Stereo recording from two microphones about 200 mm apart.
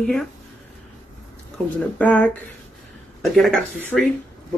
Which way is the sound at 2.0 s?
5° left (ahead or behind).